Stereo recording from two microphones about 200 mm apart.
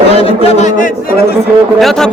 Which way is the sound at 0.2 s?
30° left (ahead or behind).